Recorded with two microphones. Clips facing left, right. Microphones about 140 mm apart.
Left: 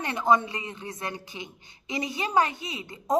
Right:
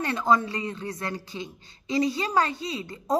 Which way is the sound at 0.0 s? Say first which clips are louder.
Even; 20° left (ahead or behind).